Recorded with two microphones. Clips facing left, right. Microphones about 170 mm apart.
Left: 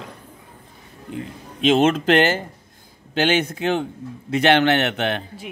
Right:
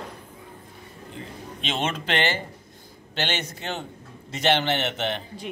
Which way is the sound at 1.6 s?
45° left (ahead or behind).